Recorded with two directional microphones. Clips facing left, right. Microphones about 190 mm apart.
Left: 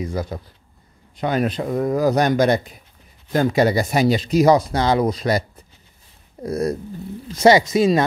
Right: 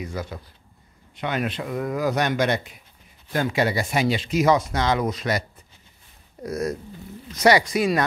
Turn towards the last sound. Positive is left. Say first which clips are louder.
# left 5 dB
turn(degrees=25)  # may be behind; listen again after turning